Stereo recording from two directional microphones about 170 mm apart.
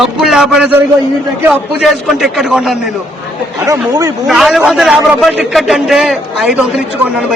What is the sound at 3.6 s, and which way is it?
Speech, 20° right (ahead or behind).